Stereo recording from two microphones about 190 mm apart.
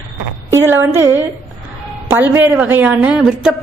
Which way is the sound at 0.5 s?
10° right (ahead or behind).